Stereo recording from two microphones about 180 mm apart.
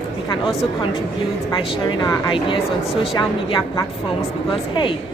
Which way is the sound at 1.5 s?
25° left (ahead or behind).